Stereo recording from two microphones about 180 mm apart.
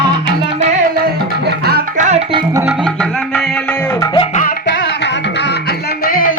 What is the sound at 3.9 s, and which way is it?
Music, 25° left (ahead or behind).